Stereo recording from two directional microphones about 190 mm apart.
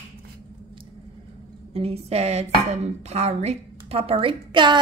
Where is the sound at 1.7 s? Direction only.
30° right (ahead or behind).